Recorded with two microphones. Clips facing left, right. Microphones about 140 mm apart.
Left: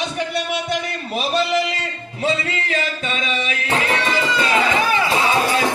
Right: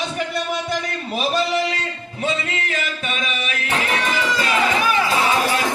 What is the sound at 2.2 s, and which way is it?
Music, 30° left (ahead or behind).